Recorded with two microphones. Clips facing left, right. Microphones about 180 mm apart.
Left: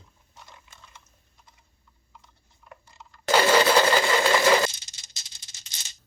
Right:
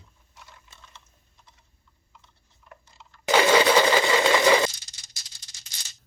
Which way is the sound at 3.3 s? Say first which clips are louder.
Right 1 dB; centre (ahead or behind).